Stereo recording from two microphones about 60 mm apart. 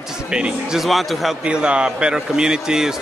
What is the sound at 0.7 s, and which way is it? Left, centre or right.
Speech, centre.